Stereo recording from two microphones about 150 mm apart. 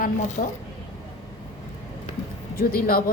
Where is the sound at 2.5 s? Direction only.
80° left.